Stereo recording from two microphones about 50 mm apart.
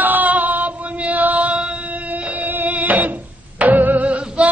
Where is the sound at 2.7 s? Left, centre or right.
Right.